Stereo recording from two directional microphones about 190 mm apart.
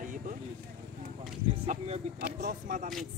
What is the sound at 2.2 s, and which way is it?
Speech, 45° right (ahead or behind).